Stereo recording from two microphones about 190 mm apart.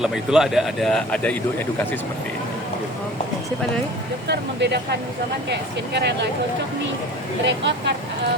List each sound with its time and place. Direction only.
0.0 s speech: centre (ahead or behind)
4.3 s speech: 60° right (ahead or behind)
7.4 s speech: 70° right (ahead or behind)